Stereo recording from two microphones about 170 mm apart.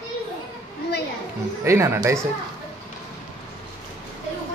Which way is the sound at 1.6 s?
15° right (ahead or behind).